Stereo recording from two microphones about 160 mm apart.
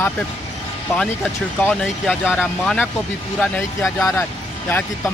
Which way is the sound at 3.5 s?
15° left (ahead or behind).